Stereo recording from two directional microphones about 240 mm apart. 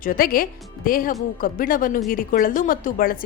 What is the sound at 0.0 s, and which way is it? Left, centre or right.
Speech, left.